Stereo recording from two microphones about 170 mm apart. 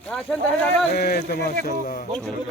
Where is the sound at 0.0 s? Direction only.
5° left (ahead or behind).